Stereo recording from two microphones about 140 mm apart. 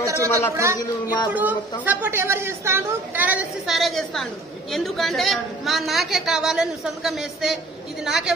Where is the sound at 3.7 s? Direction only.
Centre (ahead or behind).